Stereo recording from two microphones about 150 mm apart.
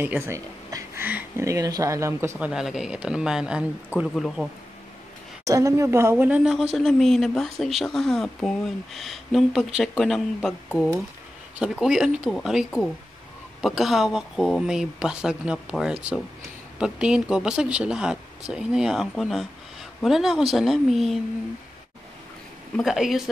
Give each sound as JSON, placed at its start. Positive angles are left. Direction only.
{"t": 0.0, "sound": "a sound", "side_deg": -15}
{"t": 1.0, "sound": "speech", "side_deg": -15}
{"t": 2.3, "sound": "speech", "side_deg": -5}
{"t": 5.4, "sound": "a woman's voice", "side_deg": -20}
{"t": 22.8, "sound": "speech", "side_deg": 0}